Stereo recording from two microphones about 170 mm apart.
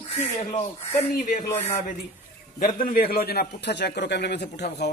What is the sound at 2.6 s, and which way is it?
A man's voice, 55° left (ahead or behind).